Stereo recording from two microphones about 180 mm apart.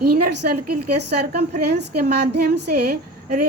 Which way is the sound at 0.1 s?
60° right (ahead or behind).